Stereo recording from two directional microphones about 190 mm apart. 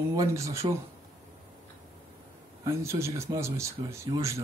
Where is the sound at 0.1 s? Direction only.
15° right (ahead or behind).